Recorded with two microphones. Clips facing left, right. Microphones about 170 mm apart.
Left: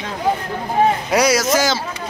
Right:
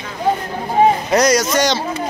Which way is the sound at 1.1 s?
5° left (ahead or behind).